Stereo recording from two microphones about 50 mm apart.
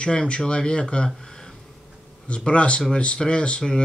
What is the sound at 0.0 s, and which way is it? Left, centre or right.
Speech, centre.